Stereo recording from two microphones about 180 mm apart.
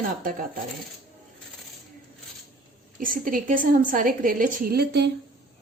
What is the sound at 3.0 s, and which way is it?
A woman's voice, 50° right (ahead or behind).